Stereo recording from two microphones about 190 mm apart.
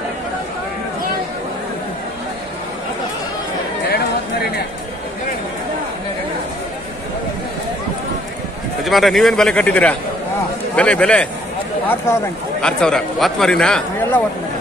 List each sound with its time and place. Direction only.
8.8 s speech: centre (ahead or behind)
12.6 s speech: 5° left (ahead or behind)